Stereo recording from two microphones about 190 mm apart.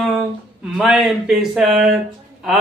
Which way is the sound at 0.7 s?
Centre (ahead or behind).